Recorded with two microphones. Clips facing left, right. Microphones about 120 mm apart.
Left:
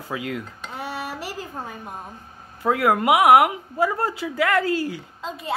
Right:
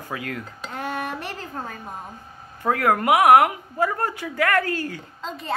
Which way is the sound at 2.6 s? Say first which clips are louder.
Left 1 dB; 15° left (ahead or behind).